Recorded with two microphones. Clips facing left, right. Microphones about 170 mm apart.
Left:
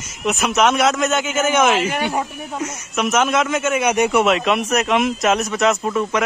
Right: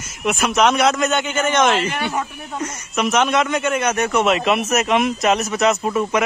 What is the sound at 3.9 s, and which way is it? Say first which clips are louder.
Speech: left 3 dB; 15° left (ahead or behind).